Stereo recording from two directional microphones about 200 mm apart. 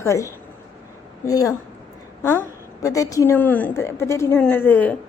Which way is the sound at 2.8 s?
15° left (ahead or behind).